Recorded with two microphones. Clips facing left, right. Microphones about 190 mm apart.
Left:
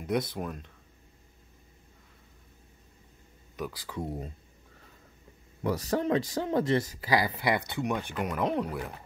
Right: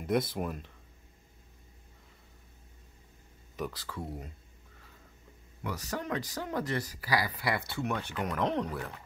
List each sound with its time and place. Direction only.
0.0 s speech: centre (ahead or behind)
3.7 s speech: 15° left (ahead or behind)
5.6 s speech: 35° left (ahead or behind); by 8.9 s 10° left (ahead or behind)